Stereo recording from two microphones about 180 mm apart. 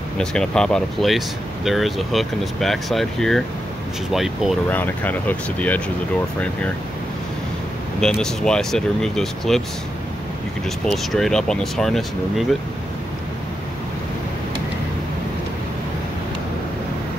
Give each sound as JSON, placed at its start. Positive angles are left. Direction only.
{"t": 0.2, "sound": "speech", "side_deg": 5}
{"t": 4.6, "sound": "speech", "side_deg": 10}
{"t": 8.0, "sound": "speech", "side_deg": 5}
{"t": 10.9, "sound": "speech", "side_deg": 0}